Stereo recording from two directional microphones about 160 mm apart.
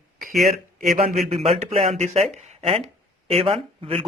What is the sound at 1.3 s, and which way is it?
Speech, 40° right (ahead or behind).